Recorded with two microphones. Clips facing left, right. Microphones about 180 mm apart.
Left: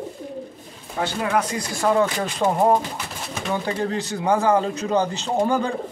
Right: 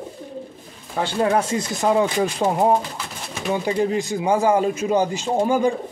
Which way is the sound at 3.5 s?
15° right (ahead or behind).